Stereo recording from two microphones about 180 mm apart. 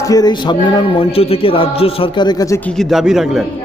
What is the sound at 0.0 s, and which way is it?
Music, 20° left (ahead or behind).